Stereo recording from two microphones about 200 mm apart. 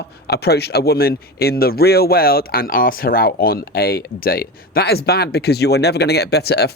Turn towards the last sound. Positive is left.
turn(degrees=55)  # may be behind; listen again after turning